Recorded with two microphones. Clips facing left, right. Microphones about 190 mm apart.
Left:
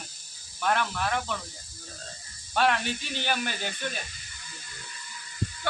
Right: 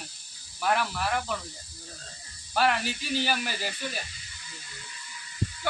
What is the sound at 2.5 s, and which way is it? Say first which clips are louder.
Speech: even; 5° right (ahead or behind).